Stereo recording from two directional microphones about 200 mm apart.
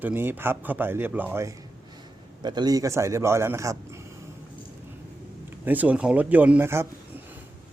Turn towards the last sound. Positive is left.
turn(degrees=-10)  # may be behind; listen again after turning